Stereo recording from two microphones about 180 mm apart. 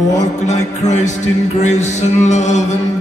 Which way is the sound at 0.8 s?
40° left (ahead or behind).